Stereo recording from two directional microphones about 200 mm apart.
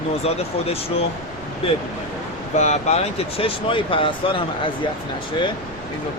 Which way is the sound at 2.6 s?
35° left (ahead or behind).